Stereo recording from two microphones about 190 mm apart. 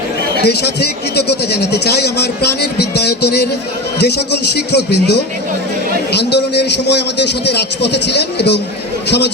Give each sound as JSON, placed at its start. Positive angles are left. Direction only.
{"t": 0.4, "sound": "a man's voice", "side_deg": 60}